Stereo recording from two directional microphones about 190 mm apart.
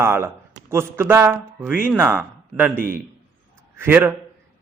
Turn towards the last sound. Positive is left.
turn(degrees=-10)  # may be behind; listen again after turning